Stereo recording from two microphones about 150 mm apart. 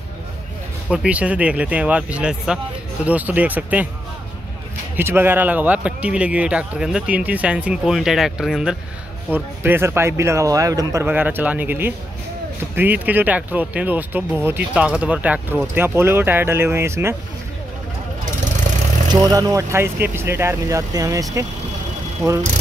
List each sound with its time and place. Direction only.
0.8 s speech: 10° right (ahead or behind)
4.9 s speech: 15° right (ahead or behind)
19.0 s speech: 25° right (ahead or behind)